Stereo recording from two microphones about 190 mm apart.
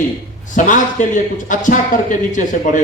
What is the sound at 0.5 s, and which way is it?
A man's voice, 40° left (ahead or behind).